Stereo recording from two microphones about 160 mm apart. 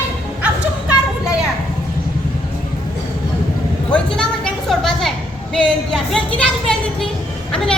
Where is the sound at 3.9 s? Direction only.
5° left (ahead or behind).